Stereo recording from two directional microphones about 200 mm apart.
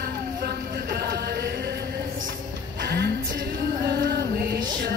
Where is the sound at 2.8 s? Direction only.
55° right (ahead or behind).